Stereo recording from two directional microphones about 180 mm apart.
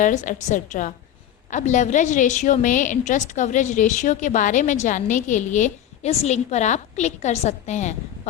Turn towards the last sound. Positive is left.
turn(degrees=40)  # may be behind; listen again after turning